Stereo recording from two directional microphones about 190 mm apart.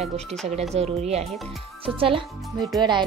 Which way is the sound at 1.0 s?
35° right (ahead or behind).